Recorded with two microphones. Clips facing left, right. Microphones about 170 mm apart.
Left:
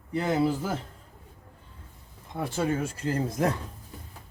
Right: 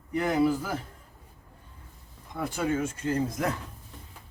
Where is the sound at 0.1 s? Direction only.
30° left (ahead or behind).